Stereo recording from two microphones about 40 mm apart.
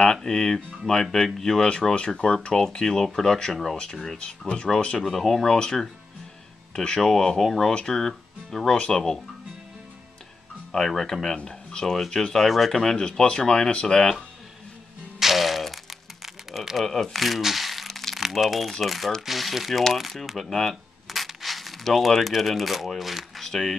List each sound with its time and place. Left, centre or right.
0.0 s speech: centre
1.6 s speech: centre
4.2 s speech: left
5.1 s speech: centre
10.7 s speech: centre
11.3 s speech: left
13.9 s speech: centre
15.1 s music: centre
16.7 s speech: centre
17.1 s crumpling: centre
18.2 s speech: centre
21.1 s crushing: centre
21.8 s speech: centre